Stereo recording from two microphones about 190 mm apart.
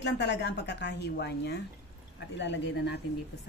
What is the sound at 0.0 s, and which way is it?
A woman's voice, 65° left (ahead or behind).